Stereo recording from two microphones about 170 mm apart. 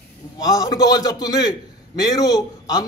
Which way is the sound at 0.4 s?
20° left (ahead or behind).